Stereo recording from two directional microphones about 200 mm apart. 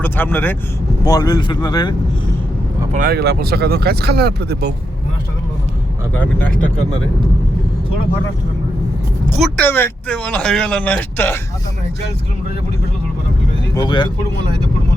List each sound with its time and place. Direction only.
0.0 s speech: 10° left (ahead or behind)
2.9 s speech: 45° right (ahead or behind)
6.1 s speech: 5° left (ahead or behind)
9.4 s speech: 10° left (ahead or behind)
13.7 s speech: 25° left (ahead or behind)